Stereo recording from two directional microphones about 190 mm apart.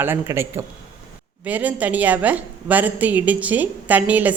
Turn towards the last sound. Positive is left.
turn(degrees=-10)  # may be behind; listen again after turning